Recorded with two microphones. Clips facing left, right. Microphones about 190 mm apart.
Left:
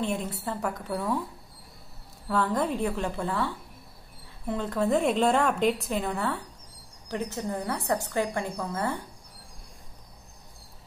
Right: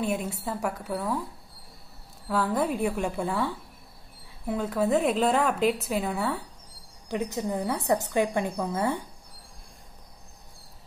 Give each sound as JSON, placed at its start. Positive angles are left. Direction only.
{"t": 0.0, "sound": "a woman's voice", "side_deg": -10}
{"t": 2.2, "sound": "a woman's voice", "side_deg": -5}